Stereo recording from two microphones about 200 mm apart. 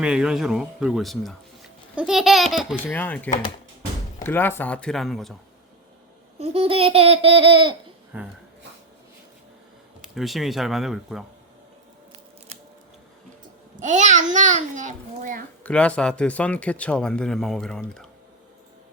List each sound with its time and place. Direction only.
0.0 s speech: 5° right (ahead or behind)
6.4 s babbling: 30° right (ahead or behind)
8.1 s speech: 10° right (ahead or behind)
10.0 s speech: centre (ahead or behind)
13.8 s a child's voice: 35° right (ahead or behind)
15.6 s speech: 5° left (ahead or behind)